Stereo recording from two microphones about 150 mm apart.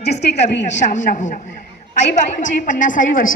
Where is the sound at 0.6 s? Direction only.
55° left (ahead or behind).